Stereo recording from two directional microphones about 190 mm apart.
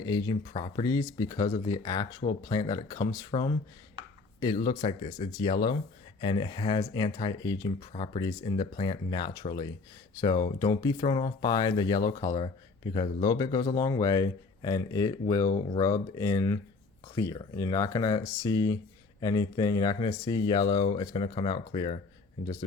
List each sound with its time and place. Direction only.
0.1 s speech: 20° left (ahead or behind)